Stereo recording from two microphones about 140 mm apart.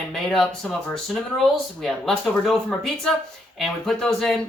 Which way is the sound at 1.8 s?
Centre (ahead or behind).